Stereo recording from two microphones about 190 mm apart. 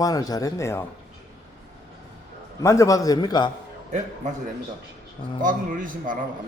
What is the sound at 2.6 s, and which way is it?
Speech, 15° left (ahead or behind).